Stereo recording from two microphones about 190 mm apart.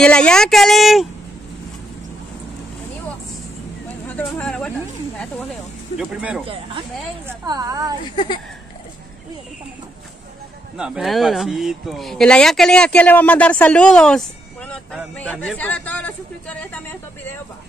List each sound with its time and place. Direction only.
0.0 s speech: 5° left (ahead or behind)
4.1 s a sound: 5° left (ahead or behind)
5.9 s speech: 5° right (ahead or behind)
6.4 s a woman's voice: 30° right (ahead or behind)
10.8 s a man's voice: centre (ahead or behind)